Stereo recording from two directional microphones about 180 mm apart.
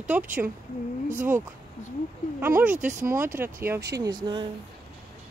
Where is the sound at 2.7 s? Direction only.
45° right (ahead or behind).